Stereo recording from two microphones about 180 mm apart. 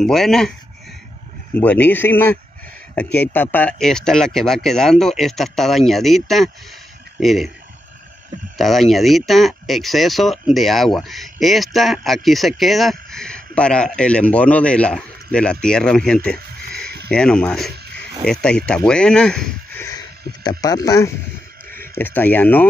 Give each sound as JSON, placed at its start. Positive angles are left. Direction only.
{"t": 0.0, "sound": "speech", "side_deg": 0}
{"t": 1.5, "sound": "speech", "side_deg": 10}
{"t": 8.5, "sound": "speech", "side_deg": 0}